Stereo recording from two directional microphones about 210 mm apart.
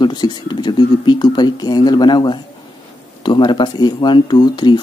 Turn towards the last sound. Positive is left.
turn(degrees=20)  # may be behind; listen again after turning